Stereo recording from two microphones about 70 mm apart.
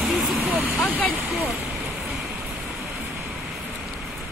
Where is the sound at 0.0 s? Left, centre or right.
Centre.